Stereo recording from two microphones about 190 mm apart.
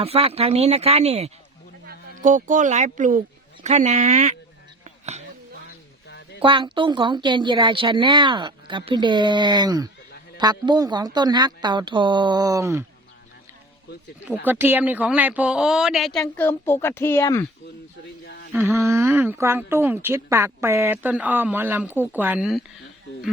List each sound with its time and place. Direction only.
0.0 s speech: 30° right (ahead or behind)
4.8 s a sound: 35° right (ahead or behind)
6.1 s a sound: 65° left (ahead or behind)
6.4 s speech: 25° right (ahead or behind)
14.3 s speech: 10° right (ahead or behind)
16.2 s a woman's voice: 10° left (ahead or behind)
18.5 s mantra: centre (ahead or behind)
18.8 s speech: 15° right (ahead or behind)